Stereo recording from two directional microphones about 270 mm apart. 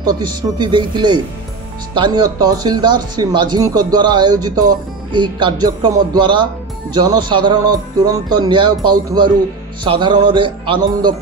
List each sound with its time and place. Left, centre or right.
0.0 s speech: centre